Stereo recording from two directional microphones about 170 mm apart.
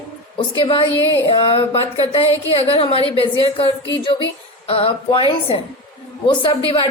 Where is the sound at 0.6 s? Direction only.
30° left (ahead or behind).